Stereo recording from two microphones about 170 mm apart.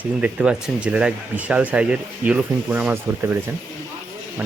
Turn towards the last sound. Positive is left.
turn(degrees=-10)  # may be behind; listen again after turning